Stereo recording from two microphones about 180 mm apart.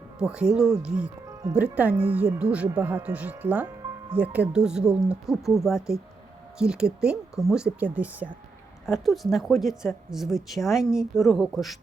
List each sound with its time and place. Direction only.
0.2 s a woman's voice: 5° right (ahead or behind)
2.6 s speech: 20° right (ahead or behind)
2.9 s a woman's voice: 5° right (ahead or behind)